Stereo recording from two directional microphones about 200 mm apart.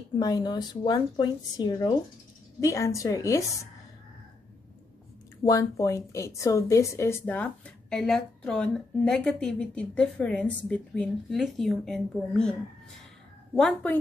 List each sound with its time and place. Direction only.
0.2 s a woman's voice: 20° left (ahead or behind)
5.4 s a woman's voice: 15° left (ahead or behind)
13.6 s speech: 5° left (ahead or behind)